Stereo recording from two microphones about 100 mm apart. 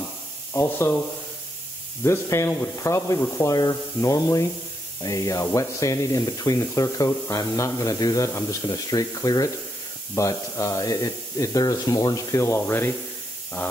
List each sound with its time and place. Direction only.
0.5 s speech: 25° left (ahead or behind)
2.0 s speech: 25° left (ahead or behind)